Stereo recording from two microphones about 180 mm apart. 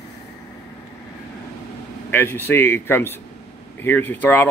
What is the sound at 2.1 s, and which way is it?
Speech, 10° left (ahead or behind).